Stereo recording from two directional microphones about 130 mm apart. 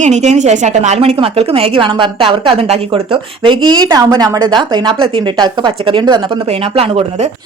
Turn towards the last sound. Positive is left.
turn(degrees=-50)  # may be behind; listen again after turning